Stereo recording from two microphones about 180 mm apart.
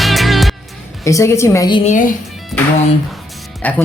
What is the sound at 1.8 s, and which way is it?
Speech, 45° left (ahead or behind).